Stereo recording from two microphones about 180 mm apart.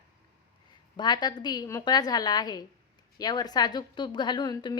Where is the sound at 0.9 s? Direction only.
25° left (ahead or behind).